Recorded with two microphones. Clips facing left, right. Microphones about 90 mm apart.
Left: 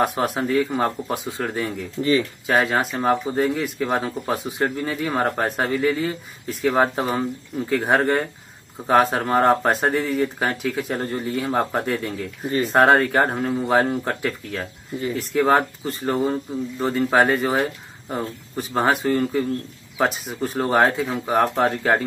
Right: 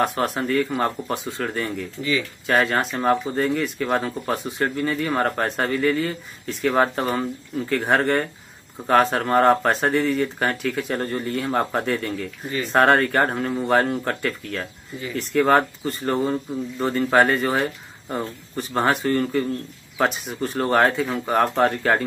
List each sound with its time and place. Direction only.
0.0 s speech: 5° left (ahead or behind)
2.0 s speech: 20° left (ahead or behind)
2.4 s speech: 5° left (ahead or behind)